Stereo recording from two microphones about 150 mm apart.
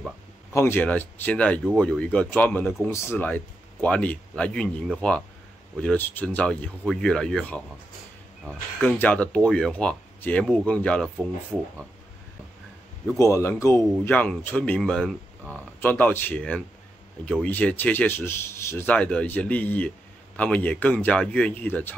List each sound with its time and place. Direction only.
0.5 s speech: 15° left (ahead or behind)
13.2 s speech: 15° left (ahead or behind)
15.8 s speech: 15° left (ahead or behind)